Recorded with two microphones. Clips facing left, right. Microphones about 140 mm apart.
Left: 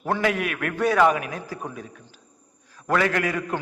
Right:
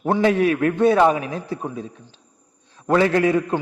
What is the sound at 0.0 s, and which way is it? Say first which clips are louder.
A man's voice: right 7 dB; 25° right (ahead or behind).